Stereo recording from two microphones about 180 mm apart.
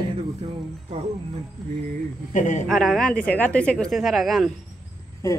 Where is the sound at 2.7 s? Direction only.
Centre (ahead or behind).